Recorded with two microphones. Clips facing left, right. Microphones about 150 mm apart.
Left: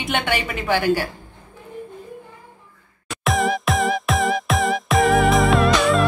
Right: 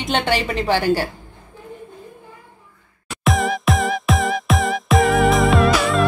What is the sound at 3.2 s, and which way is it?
Music, centre (ahead or behind).